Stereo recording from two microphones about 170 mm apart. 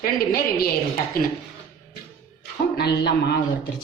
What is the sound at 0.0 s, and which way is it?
Speech, 60° left (ahead or behind).